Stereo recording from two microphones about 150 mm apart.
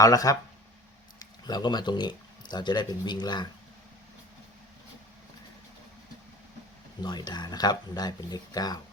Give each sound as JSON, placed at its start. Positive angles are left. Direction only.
{"t": 0.0, "sound": "speech", "side_deg": 25}
{"t": 7.0, "sound": "speech", "side_deg": 25}